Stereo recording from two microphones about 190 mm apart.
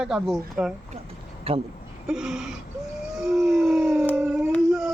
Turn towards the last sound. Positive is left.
turn(degrees=0)  # may be behind; listen again after turning